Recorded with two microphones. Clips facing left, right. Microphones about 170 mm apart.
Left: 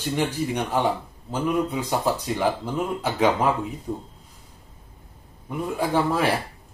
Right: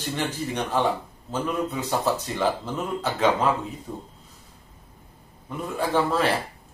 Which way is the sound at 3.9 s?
25° left (ahead or behind).